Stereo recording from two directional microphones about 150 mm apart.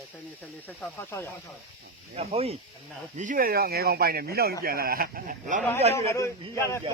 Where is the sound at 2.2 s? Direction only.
45° right (ahead or behind).